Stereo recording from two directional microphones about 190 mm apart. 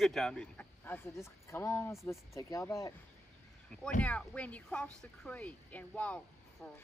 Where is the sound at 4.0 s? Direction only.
5° left (ahead or behind).